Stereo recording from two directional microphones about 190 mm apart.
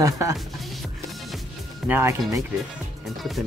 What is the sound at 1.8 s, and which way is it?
Speech, 10° right (ahead or behind).